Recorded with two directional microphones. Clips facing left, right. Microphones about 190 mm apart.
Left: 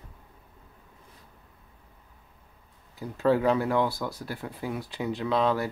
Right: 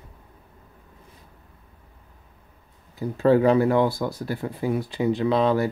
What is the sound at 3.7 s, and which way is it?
Speech, 20° right (ahead or behind).